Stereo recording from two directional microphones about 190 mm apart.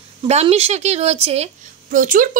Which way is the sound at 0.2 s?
35° right (ahead or behind).